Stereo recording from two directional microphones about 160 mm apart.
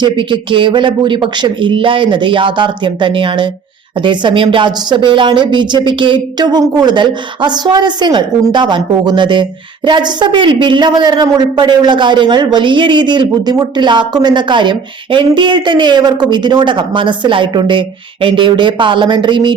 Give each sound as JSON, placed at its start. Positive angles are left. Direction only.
{"t": 0.0, "sound": "a woman's voice", "side_deg": -30}